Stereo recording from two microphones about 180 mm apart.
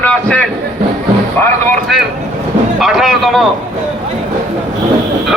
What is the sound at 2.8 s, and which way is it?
Speech, centre (ahead or behind).